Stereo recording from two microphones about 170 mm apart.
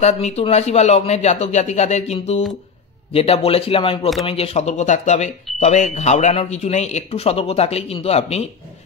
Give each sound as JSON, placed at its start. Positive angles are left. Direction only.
{"t": 0.0, "sound": "speech", "side_deg": 40}